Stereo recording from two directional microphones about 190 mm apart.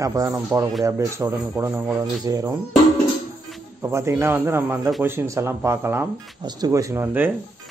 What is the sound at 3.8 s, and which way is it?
Speech, 15° right (ahead or behind).